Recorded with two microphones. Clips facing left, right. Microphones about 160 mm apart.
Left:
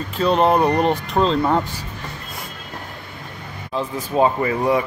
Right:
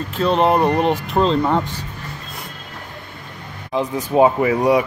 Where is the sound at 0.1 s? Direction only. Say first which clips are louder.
Even; centre (ahead or behind).